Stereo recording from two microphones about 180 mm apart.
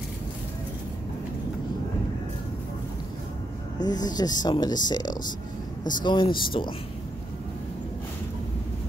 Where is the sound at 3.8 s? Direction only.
20° left (ahead or behind).